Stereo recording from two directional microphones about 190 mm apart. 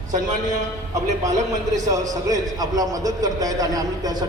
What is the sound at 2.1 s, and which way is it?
A man's voice, 20° right (ahead or behind).